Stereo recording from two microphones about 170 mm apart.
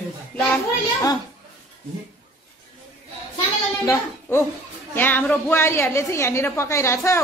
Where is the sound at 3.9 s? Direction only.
15° left (ahead or behind).